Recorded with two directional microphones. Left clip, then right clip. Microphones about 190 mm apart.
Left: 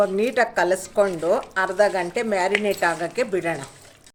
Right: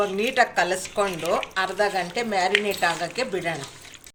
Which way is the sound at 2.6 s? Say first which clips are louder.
Left 2 dB; 75° left (ahead or behind).